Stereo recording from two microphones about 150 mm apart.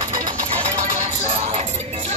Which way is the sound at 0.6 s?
50° right (ahead or behind).